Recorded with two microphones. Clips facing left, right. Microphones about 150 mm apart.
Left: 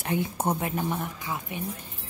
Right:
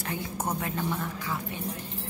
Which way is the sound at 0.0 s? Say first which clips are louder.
Left 5 dB; 20° left (ahead or behind).